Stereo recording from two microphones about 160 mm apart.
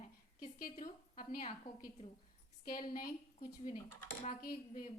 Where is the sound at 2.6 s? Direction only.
60° left (ahead or behind).